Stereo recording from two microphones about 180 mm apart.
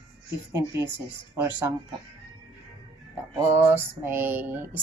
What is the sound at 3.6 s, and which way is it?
Speech, 10° right (ahead or behind).